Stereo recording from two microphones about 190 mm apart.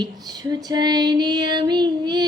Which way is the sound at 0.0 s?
20° right (ahead or behind).